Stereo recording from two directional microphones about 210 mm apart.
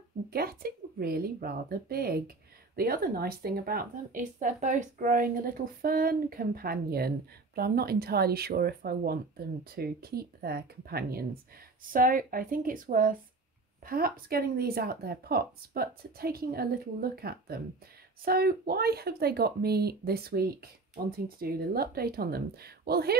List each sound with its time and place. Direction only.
0.3 s speech: 45° right (ahead or behind)